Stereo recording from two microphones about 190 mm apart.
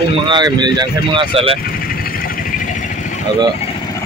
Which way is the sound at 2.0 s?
50° left (ahead or behind).